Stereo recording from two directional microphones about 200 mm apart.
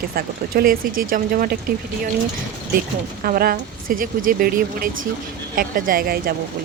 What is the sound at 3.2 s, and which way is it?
Speech, 45° right (ahead or behind).